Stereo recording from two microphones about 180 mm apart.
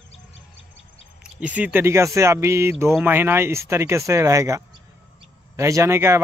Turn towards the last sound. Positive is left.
turn(degrees=-15)  # may be behind; listen again after turning